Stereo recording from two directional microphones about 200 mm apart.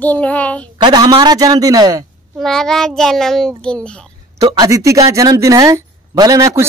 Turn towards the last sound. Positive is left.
turn(degrees=-15)  # may be behind; listen again after turning